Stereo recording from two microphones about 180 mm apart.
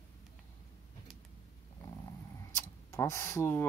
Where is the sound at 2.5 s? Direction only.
15° left (ahead or behind).